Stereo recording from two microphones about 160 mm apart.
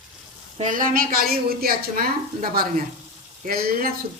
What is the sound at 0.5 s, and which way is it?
A woman's voice, 55° right (ahead or behind).